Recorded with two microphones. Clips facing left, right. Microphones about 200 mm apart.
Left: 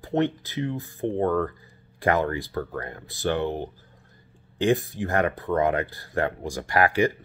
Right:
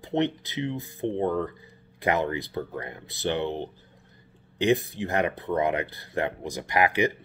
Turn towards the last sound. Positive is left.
turn(degrees=-20)  # may be behind; listen again after turning